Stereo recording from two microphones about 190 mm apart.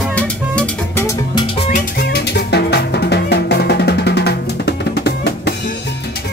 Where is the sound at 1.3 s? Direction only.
30° left (ahead or behind).